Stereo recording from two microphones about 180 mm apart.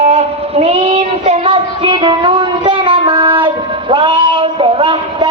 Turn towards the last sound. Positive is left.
turn(degrees=-30)  # may be behind; listen again after turning